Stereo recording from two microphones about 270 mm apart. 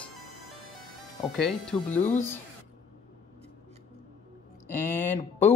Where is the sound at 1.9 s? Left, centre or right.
Left.